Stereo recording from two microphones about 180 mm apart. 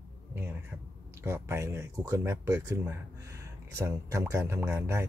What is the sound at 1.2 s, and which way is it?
A man's voice, 15° right (ahead or behind).